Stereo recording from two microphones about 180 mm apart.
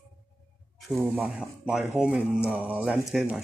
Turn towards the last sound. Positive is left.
turn(degrees=0)  # may be behind; listen again after turning